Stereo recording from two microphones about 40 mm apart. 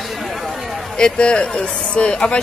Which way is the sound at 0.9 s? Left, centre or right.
Left.